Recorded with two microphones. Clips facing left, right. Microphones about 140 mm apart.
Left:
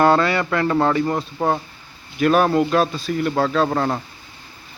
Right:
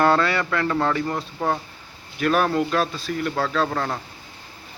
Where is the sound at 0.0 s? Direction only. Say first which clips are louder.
Left 3 dB; 15° left (ahead or behind).